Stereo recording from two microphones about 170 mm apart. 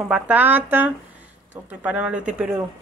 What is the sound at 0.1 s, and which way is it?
Speech, 10° right (ahead or behind).